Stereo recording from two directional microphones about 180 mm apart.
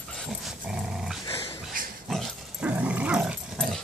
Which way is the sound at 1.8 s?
50° right (ahead or behind).